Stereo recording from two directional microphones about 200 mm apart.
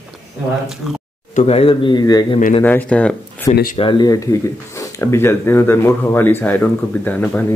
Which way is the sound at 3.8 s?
25° left (ahead or behind).